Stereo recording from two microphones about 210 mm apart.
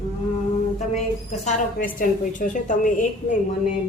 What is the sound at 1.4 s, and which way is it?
A woman's voice, 40° left (ahead or behind).